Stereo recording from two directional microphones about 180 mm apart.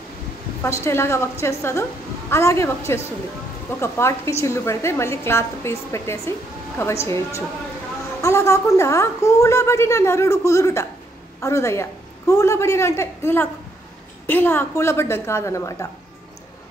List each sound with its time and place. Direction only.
0.7 s a woman's voice: 15° left (ahead or behind)